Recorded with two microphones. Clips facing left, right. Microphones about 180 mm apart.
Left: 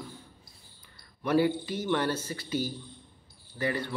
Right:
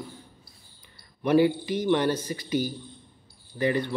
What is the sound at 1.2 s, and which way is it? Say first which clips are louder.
Speech: right 4 dB; 15° right (ahead or behind).